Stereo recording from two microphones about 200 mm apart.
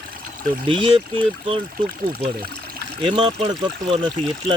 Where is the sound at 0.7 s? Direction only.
25° right (ahead or behind).